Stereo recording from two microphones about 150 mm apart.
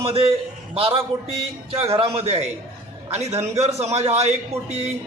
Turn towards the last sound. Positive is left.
turn(degrees=-45)  # may be behind; listen again after turning